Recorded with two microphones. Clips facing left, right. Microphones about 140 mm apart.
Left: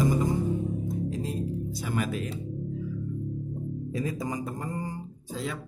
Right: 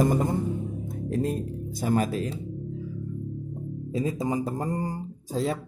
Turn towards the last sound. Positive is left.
turn(degrees=-35)  # may be behind; listen again after turning